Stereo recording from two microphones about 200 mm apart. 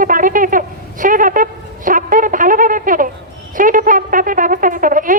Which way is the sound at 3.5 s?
40° right (ahead or behind).